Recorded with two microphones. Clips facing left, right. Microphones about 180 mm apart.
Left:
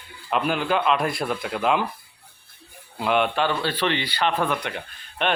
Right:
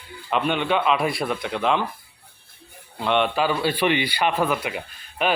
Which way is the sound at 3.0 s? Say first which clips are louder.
Right 1 dB; centre (ahead or behind).